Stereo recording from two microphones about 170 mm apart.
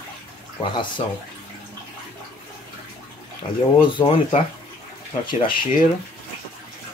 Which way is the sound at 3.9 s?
30° left (ahead or behind).